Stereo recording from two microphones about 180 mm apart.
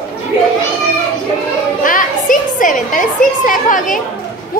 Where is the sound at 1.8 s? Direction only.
50° left (ahead or behind).